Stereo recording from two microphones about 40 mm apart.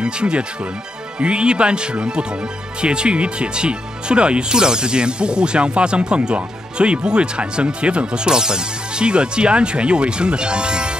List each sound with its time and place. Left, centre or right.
0.0 s speech: right